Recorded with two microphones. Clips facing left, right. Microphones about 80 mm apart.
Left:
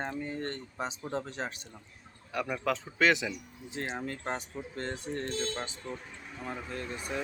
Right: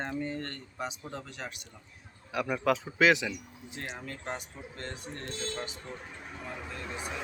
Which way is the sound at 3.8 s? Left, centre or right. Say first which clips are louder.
Left 5 dB; left.